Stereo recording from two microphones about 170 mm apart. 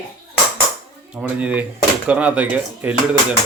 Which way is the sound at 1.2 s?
10° right (ahead or behind).